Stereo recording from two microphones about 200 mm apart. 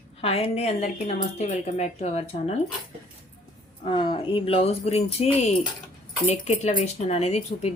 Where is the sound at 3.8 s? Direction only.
25° left (ahead or behind).